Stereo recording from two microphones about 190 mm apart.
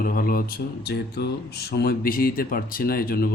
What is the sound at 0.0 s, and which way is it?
Speech, 50° left (ahead or behind).